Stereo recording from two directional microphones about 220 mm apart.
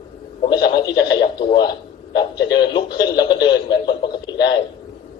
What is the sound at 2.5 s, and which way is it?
A man's voice, 20° left (ahead or behind).